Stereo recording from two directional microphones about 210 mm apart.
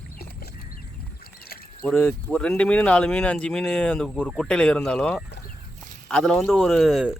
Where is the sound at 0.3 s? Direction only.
45° left (ahead or behind).